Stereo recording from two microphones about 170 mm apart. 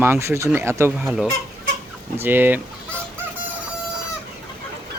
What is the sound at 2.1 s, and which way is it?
Speech, 10° right (ahead or behind).